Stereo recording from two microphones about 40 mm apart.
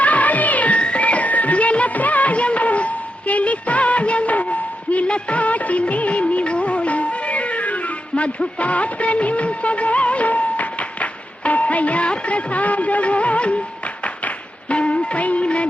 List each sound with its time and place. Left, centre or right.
0.0 s music: left
0.8 s music of bollywood: left